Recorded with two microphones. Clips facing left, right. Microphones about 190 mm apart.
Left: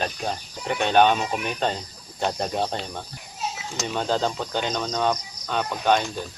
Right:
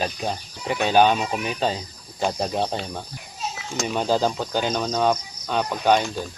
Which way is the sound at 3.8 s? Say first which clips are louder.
Right 3 dB; 10° right (ahead or behind).